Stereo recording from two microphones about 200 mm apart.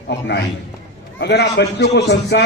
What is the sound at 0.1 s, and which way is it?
A man's voice, 60° left (ahead or behind).